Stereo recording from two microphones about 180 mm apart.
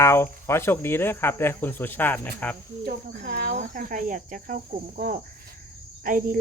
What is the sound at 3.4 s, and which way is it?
Speech, 45° right (ahead or behind).